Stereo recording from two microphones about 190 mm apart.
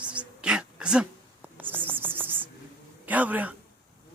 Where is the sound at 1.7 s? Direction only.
10° right (ahead or behind).